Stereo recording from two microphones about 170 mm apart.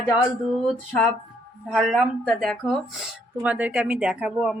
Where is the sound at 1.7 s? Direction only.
5° right (ahead or behind).